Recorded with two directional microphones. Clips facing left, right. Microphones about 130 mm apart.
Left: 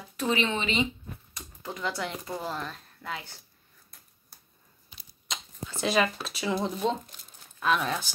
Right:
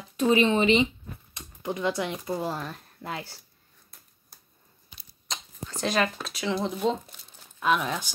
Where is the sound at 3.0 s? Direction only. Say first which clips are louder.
Right 2 dB; 35° right (ahead or behind).